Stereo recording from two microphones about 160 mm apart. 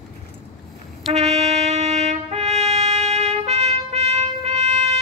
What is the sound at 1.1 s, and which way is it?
Trumpet, 40° right (ahead or behind).